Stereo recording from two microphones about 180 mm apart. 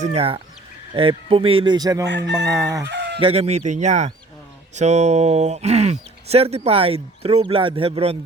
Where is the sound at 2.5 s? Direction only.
15° right (ahead or behind).